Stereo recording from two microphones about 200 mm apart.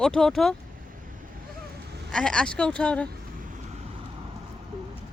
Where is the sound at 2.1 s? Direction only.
5° left (ahead or behind).